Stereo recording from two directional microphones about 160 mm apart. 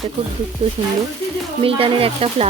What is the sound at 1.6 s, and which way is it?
Speech, 35° right (ahead or behind).